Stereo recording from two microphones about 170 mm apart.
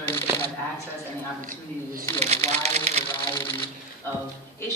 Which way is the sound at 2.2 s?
40° right (ahead or behind).